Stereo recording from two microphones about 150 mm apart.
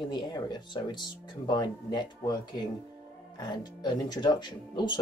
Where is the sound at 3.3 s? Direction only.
30° left (ahead or behind).